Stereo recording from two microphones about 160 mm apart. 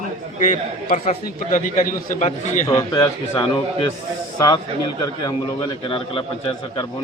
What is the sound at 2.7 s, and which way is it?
A man's voice, 20° left (ahead or behind).